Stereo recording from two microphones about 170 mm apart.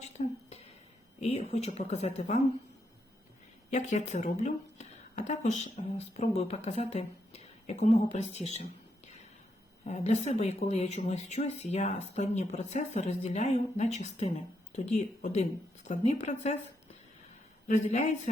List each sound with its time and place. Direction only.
0.2 s a sound: 45° left (ahead or behind)
1.2 s speech: 35° left (ahead or behind)
3.7 s speech: 45° left (ahead or behind)
9.8 s a woman's voice: 40° left (ahead or behind)
17.7 s a woman's voice: 45° left (ahead or behind)